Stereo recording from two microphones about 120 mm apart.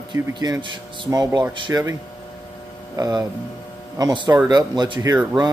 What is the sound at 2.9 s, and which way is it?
Speech, 30° right (ahead or behind).